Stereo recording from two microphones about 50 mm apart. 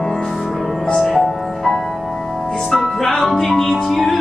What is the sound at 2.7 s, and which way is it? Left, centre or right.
Music, centre.